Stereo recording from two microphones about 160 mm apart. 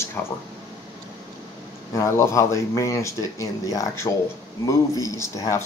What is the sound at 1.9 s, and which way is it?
Speech, 20° left (ahead or behind).